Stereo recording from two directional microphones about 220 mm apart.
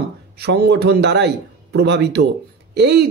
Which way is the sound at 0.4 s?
50° right (ahead or behind).